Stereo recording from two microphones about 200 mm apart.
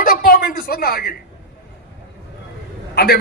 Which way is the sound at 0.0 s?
45° left (ahead or behind).